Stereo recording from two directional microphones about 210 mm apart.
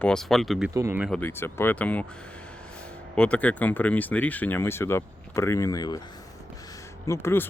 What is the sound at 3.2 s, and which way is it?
Speech, 5° left (ahead or behind).